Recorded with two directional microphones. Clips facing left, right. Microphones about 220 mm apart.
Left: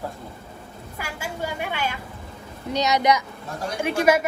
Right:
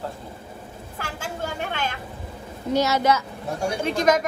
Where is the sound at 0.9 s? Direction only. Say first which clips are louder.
Even; 10° left (ahead or behind).